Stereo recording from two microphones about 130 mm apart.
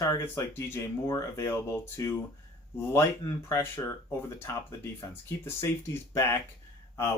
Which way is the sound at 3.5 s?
20° left (ahead or behind).